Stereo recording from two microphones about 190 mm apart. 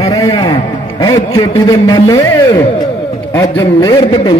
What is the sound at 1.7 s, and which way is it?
A man's voice, 20° left (ahead or behind).